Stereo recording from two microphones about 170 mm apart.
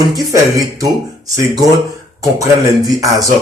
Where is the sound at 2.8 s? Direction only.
20° right (ahead or behind).